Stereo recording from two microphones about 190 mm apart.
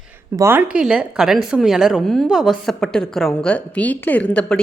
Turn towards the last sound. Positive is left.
turn(degrees=5)  # may be behind; listen again after turning